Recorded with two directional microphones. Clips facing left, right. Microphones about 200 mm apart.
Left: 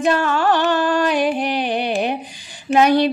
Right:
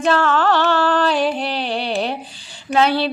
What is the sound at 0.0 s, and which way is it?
Music, 15° left (ahead or behind).